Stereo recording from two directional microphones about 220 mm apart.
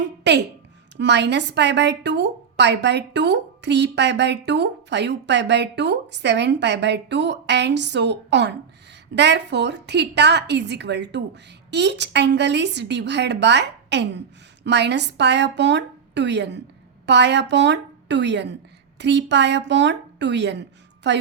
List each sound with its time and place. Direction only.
0.3 s a woman's voice: 50° right (ahead or behind)